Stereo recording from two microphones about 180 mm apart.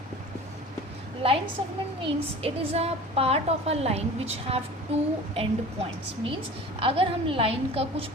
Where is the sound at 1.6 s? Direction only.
30° right (ahead or behind).